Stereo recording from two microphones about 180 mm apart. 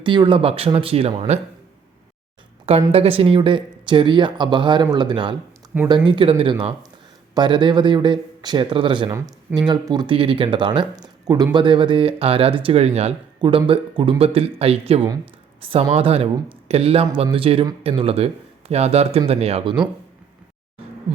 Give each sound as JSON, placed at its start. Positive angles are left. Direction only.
{"t": 0.0, "sound": "speech", "side_deg": -25}
{"t": 2.9, "sound": "speech", "side_deg": -30}